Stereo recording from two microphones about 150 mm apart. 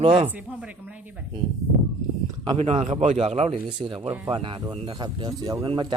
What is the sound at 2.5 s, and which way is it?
A man's voice, 45° right (ahead or behind).